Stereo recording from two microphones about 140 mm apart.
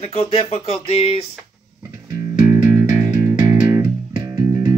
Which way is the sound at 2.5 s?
20° right (ahead or behind).